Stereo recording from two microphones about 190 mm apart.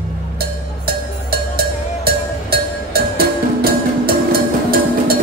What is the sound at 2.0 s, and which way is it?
Music, 55° right (ahead or behind).